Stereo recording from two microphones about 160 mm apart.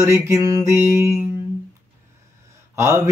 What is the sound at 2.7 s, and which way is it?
Speech, 15° right (ahead or behind).